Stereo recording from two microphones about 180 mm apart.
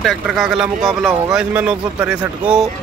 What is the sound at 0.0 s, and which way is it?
Speech, centre (ahead or behind).